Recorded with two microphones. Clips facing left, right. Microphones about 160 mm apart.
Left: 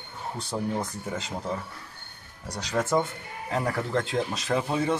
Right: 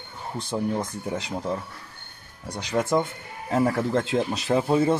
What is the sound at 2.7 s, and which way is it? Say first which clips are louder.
Speech: right 2 dB; 15° right (ahead or behind).